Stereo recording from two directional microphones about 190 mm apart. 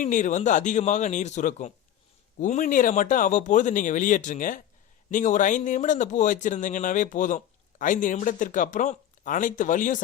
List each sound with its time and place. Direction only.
0.0 s speech: 40° left (ahead or behind)